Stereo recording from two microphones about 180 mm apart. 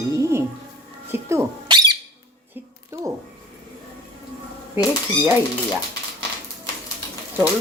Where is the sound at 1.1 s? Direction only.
15° right (ahead or behind).